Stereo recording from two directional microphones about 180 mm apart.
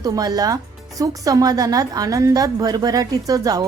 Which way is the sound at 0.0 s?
20° right (ahead or behind).